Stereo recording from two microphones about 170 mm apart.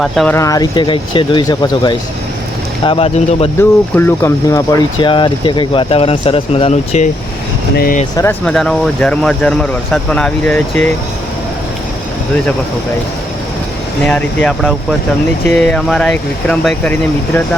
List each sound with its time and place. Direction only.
0.0 s speech: centre (ahead or behind)
0.3 s speech: 20° left (ahead or behind)
3.6 s speech: 10° left (ahead or behind); by 7.1 s 40° left (ahead or behind)
8.1 s speech: 15° left (ahead or behind)
8.4 s speech: 5° left (ahead or behind)
14.0 s speech: 5° left (ahead or behind)